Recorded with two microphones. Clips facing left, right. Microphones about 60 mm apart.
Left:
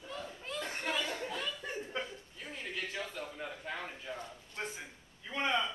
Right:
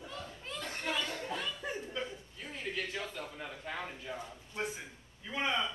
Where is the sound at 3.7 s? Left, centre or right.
Centre.